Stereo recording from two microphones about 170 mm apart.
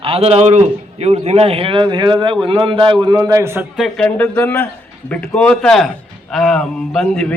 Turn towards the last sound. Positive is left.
turn(degrees=5)  # may be behind; listen again after turning